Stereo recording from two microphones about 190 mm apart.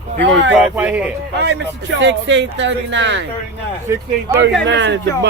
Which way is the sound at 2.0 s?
70° right (ahead or behind).